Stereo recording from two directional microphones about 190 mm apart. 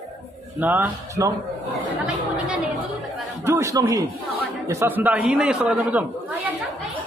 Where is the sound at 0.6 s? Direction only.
10° right (ahead or behind).